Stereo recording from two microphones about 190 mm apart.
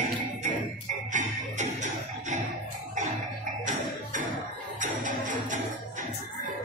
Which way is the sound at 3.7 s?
40° right (ahead or behind).